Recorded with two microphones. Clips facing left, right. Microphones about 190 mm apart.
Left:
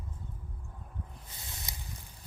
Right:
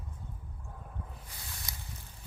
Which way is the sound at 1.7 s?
20° left (ahead or behind).